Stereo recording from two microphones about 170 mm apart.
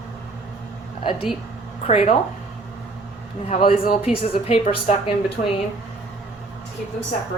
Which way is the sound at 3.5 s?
35° left (ahead or behind).